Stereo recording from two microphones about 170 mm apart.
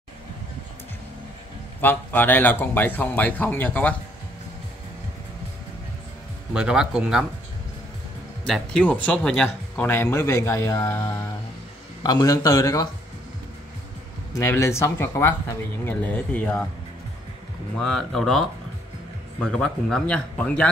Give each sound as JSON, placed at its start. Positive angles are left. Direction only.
{"t": 1.8, "sound": "speech", "side_deg": 10}
{"t": 6.5, "sound": "speech", "side_deg": -5}
{"t": 8.5, "sound": "speech", "side_deg": 5}
{"t": 14.3, "sound": "speech", "side_deg": 15}
{"t": 17.7, "sound": "speech", "side_deg": 0}